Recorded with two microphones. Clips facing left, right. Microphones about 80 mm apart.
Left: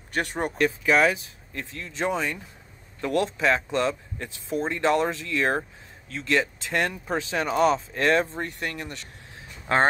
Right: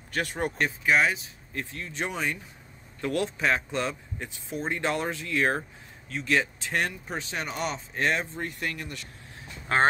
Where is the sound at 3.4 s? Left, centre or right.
Left.